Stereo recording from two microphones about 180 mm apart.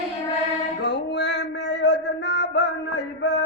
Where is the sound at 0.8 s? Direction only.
70° left (ahead or behind).